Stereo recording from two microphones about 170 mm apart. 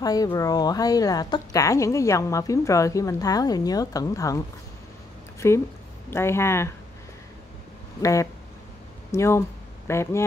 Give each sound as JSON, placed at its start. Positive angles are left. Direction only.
{"t": 0.0, "sound": "speech", "side_deg": 20}
{"t": 5.4, "sound": "speech", "side_deg": 15}
{"t": 8.0, "sound": "speech", "side_deg": 20}